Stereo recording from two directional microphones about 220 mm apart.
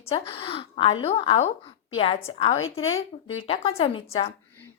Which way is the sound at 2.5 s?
65° left (ahead or behind).